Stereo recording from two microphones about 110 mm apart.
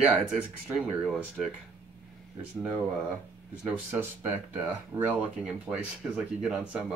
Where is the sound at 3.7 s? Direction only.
20° right (ahead or behind).